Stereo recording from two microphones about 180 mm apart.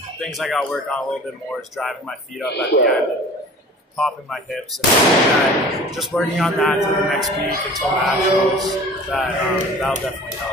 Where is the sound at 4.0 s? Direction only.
Centre (ahead or behind).